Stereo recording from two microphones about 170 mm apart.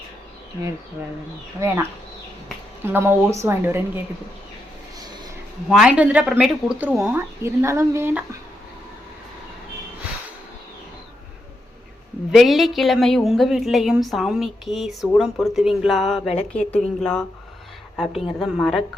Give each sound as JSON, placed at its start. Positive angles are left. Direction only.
{"t": 1.6, "sound": "a woman's voice", "side_deg": -15}
{"t": 2.9, "sound": "a woman's voice", "side_deg": -15}
{"t": 5.6, "sound": "a woman's voice", "side_deg": -5}
{"t": 12.3, "sound": "a woman's voice", "side_deg": 0}